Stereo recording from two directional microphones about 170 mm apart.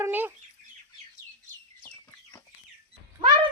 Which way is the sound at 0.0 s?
10° right (ahead or behind).